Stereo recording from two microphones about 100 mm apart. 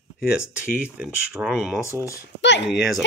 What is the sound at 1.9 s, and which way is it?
Speech, 30° left (ahead or behind).